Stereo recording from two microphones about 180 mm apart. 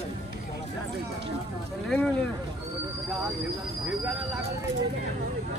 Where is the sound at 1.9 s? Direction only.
5° left (ahead or behind).